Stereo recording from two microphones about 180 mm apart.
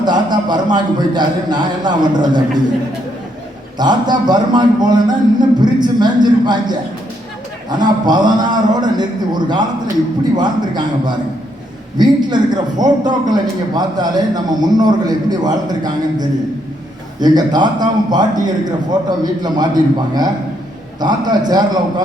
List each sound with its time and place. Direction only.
0.0 s a man's voice: 25° right (ahead or behind)
3.8 s a man's voice: 25° right (ahead or behind)